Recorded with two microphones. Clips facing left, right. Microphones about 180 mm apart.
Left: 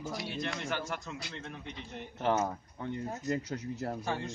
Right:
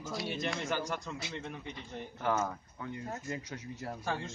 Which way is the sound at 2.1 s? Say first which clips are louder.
Left 3 dB; 25° left (ahead or behind).